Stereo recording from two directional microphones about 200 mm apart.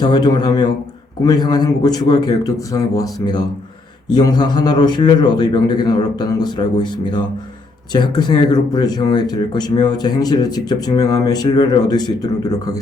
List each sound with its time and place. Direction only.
0.0 s speech: 20° left (ahead or behind)